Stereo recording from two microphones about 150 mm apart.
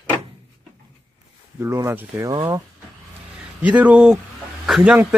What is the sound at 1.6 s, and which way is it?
Speech, 15° right (ahead or behind).